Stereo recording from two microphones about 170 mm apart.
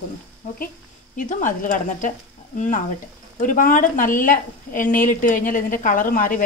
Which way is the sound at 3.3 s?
55° left (ahead or behind).